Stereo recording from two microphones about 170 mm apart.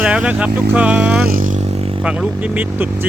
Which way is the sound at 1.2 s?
55° right (ahead or behind).